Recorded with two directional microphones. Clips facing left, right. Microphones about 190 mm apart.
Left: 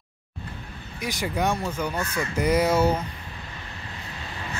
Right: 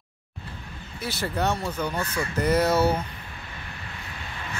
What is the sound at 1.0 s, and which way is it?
Speech, 15° left (ahead or behind).